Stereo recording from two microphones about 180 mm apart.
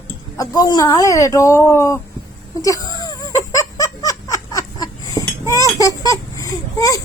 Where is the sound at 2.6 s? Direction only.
20° left (ahead or behind).